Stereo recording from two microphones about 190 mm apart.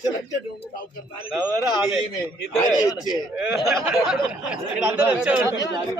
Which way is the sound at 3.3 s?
5° right (ahead or behind).